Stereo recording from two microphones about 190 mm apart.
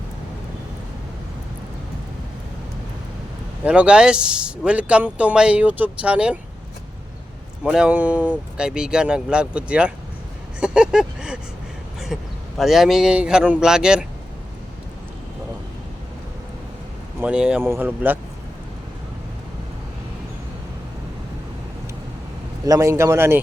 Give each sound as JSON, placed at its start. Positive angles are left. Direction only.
{"t": 3.6, "sound": "speech", "side_deg": -5}
{"t": 7.6, "sound": "speech", "side_deg": -5}
{"t": 10.6, "sound": "a sound", "side_deg": -5}
{"t": 12.5, "sound": "speech", "side_deg": 0}
{"t": 17.2, "sound": "speech", "side_deg": -5}
{"t": 22.6, "sound": "speech", "side_deg": -15}